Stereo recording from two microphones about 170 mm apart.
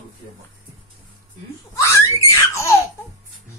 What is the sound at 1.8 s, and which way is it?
Baby laughter, 15° left (ahead or behind).